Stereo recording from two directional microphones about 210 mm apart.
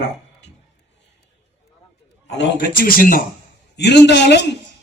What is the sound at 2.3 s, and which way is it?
Speech, 55° left (ahead or behind).